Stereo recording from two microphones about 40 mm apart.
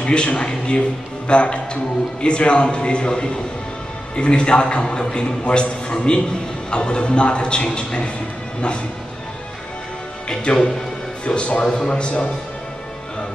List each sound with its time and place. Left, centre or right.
0.0 s a man's voice: left
10.4 s a man's voice: left
11.6 s a man's voice: centre